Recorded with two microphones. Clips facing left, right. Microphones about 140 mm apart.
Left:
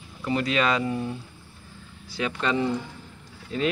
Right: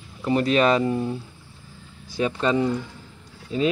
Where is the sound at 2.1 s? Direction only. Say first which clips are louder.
Right 5 dB; 30° right (ahead or behind).